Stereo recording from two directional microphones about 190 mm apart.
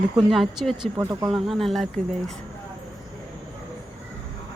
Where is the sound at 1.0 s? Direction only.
20° right (ahead or behind).